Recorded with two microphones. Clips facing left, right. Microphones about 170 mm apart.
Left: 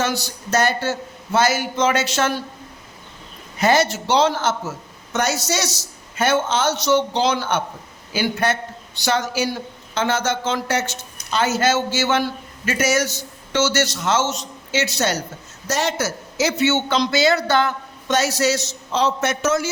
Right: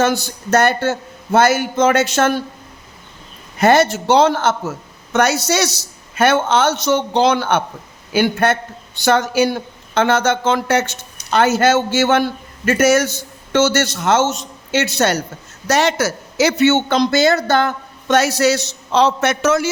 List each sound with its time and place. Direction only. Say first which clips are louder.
0.0 s speech: right 6 dB; 50° right (ahead or behind)
3.6 s a woman's voice: right 5 dB; 55° right (ahead or behind)
15.6 s a woman's voice: right 6 dB; 75° right (ahead or behind)